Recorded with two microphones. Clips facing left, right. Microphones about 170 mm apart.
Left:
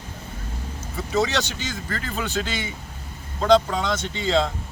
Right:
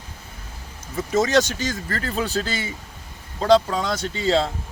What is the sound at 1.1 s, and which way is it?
Speech, 45° right (ahead or behind).